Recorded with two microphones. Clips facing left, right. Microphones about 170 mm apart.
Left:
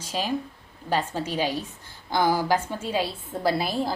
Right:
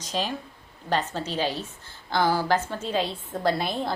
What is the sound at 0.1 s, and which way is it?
A woman's voice, 10° left (ahead or behind).